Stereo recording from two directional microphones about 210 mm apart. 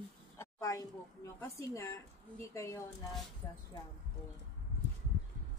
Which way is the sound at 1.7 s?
15° left (ahead or behind).